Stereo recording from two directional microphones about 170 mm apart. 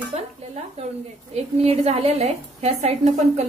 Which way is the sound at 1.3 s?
40° right (ahead or behind).